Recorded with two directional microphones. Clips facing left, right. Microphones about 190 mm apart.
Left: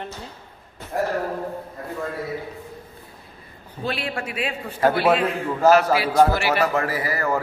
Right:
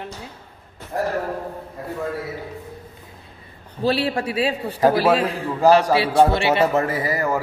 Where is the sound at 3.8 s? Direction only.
35° right (ahead or behind).